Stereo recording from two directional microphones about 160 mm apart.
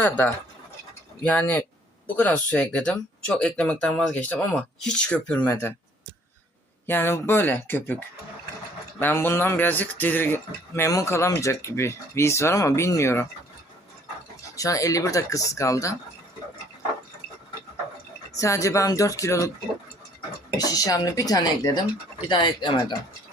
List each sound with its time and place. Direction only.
1.2 s speech: 10° left (ahead or behind)
6.8 s speech: 15° left (ahead or behind)
14.5 s speech: 20° left (ahead or behind)
18.3 s speech: 20° left (ahead or behind)
20.6 s speech: 20° left (ahead or behind)